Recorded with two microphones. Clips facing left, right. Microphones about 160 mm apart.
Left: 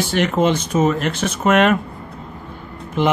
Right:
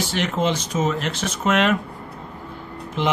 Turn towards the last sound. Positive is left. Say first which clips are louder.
# left 5 dB
turn(degrees=50)  # may be behind; listen again after turning